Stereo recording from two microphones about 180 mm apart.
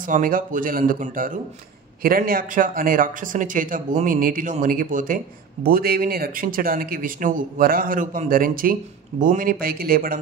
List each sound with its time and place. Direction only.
0.0 s speech: 50° right (ahead or behind)